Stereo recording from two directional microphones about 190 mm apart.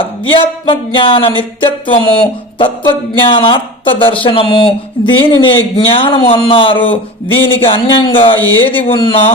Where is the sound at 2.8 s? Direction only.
25° left (ahead or behind).